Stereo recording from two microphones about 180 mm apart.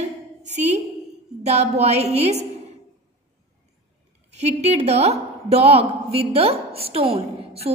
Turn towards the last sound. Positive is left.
turn(degrees=-35)  # may be behind; listen again after turning